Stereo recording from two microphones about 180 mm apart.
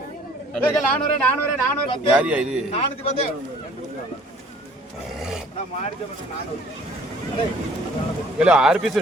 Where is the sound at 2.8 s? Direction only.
35° left (ahead or behind).